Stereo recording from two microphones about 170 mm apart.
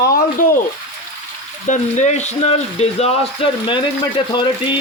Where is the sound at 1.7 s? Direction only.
45° left (ahead or behind); by 4.7 s 25° left (ahead or behind).